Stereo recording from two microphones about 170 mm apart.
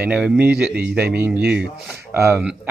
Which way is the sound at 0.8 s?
70° right (ahead or behind).